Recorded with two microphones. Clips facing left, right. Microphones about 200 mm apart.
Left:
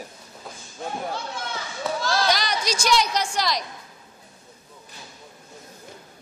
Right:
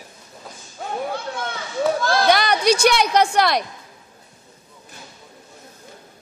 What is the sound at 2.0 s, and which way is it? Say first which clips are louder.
A woman's voice: right 3 dB; 55° right (ahead or behind).